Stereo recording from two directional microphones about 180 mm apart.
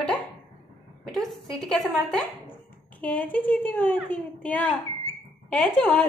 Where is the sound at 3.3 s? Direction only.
50° left (ahead or behind).